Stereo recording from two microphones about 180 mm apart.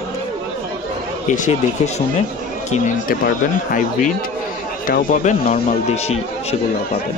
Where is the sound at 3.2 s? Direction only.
50° left (ahead or behind).